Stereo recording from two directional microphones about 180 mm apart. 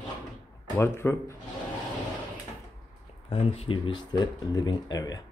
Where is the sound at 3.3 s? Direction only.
30° left (ahead or behind).